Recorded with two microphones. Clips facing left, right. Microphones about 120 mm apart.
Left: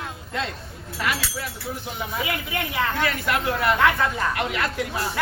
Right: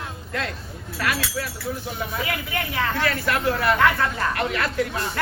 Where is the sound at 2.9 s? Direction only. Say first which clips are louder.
Right 1 dB; 15° left (ahead or behind).